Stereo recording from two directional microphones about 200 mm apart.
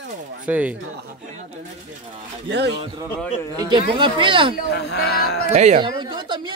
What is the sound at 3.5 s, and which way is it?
Speech, 25° right (ahead or behind).